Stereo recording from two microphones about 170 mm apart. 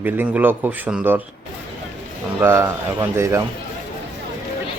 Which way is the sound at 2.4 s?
15° right (ahead or behind).